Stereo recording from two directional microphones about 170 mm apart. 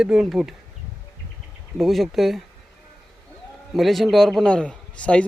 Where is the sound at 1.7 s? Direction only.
Centre (ahead or behind).